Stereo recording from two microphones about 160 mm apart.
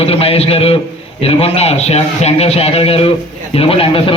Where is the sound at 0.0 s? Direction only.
40° left (ahead or behind).